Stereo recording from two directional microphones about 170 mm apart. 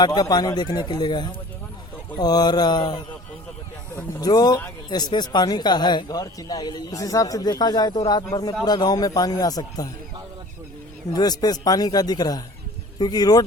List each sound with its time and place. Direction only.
0.0 s speech: 25° left (ahead or behind)
3.9 s speech: 20° left (ahead or behind)
11.1 s speech: 25° left (ahead or behind)